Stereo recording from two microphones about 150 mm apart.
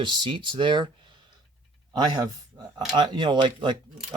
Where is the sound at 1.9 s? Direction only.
30° right (ahead or behind).